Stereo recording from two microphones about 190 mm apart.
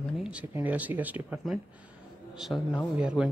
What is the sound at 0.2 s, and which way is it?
Speech, 5° right (ahead or behind).